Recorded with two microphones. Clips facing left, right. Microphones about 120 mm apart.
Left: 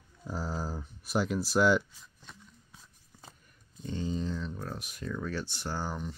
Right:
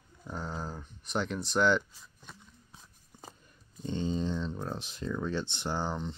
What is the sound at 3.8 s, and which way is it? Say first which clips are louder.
Speech: right 2 dB; 25° right (ahead or behind).